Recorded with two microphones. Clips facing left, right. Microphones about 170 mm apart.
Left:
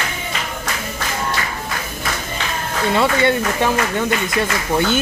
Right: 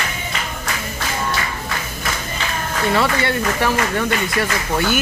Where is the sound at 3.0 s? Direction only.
20° left (ahead or behind).